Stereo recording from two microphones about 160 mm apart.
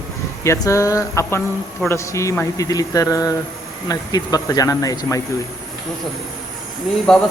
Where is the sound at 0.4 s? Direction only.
20° left (ahead or behind).